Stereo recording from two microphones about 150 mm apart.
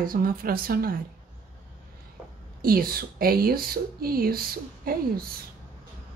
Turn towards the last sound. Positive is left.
turn(degrees=-80)